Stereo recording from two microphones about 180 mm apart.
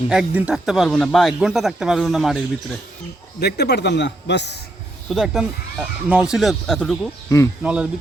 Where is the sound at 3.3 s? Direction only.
65° left (ahead or behind).